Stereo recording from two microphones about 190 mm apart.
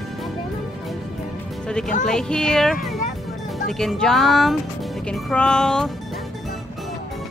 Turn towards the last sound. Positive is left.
turn(degrees=5)  # may be behind; listen again after turning